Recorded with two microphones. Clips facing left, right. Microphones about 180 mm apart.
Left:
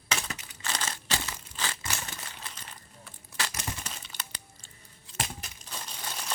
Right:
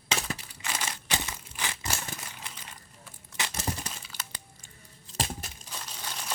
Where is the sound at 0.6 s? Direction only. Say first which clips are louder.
Even; 10° right (ahead or behind).